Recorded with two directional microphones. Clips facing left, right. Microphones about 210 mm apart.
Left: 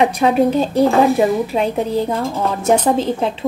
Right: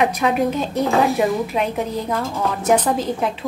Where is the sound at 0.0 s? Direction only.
30° left (ahead or behind).